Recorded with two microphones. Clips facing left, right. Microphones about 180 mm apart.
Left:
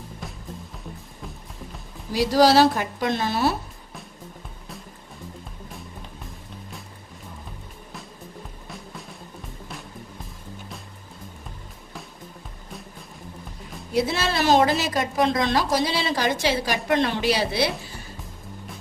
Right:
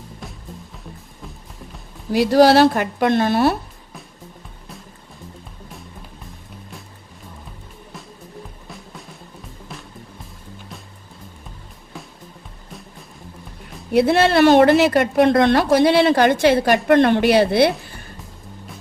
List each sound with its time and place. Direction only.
2.1 s a woman's voice: 60° right (ahead or behind)
13.9 s a woman's voice: 60° right (ahead or behind)